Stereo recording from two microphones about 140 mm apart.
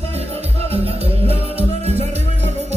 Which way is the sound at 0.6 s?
45° right (ahead or behind).